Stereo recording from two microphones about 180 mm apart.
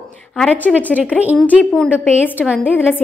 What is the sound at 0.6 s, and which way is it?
Speech, 10° right (ahead or behind).